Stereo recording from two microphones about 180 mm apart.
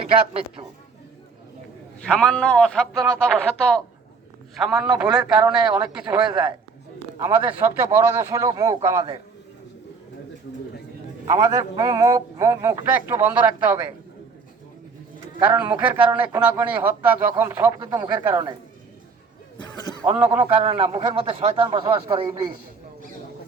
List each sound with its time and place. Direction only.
0.0 s speech: 30° right (ahead or behind)
2.0 s a man's voice: 5° left (ahead or behind); by 9.0 s 15° right (ahead or behind)
11.3 s a man's voice: 15° right (ahead or behind)
15.4 s a man's voice: 5° right (ahead or behind)
17.7 s a man's voice: 25° right (ahead or behind)
20.0 s a man's voice: 10° right (ahead or behind)
20.6 s a man's voice: 35° right (ahead or behind)